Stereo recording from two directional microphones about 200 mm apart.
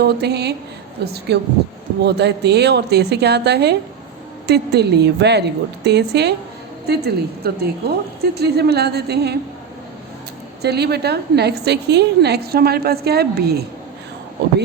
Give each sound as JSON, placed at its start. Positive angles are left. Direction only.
{"t": 0.0, "sound": "a woman's voice", "side_deg": -55}
{"t": 10.6, "sound": "a woman's voice", "side_deg": -55}